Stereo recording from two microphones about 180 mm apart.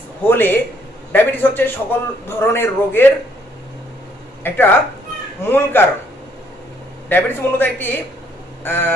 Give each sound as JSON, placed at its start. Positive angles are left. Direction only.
{"t": 0.3, "sound": "a man's voice", "side_deg": 10}
{"t": 4.4, "sound": "a man's voice", "side_deg": 10}
{"t": 7.1, "sound": "a man's voice", "side_deg": 10}